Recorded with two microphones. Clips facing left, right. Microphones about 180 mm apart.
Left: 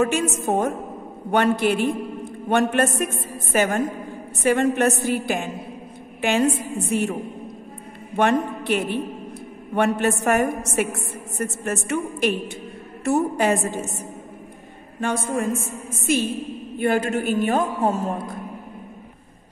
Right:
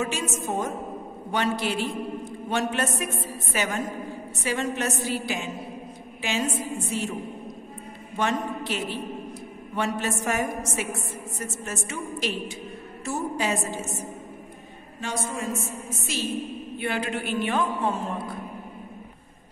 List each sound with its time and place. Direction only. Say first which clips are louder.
0.0 s a woman's voice: left 7 dB; 55° left (ahead or behind)
8.2 s a woman's voice: left 7 dB; 60° left (ahead or behind)